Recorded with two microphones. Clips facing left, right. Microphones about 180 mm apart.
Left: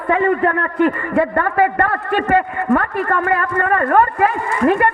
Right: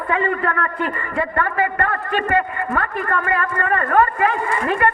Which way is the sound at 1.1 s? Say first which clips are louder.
Left 5 dB; 55° left (ahead or behind).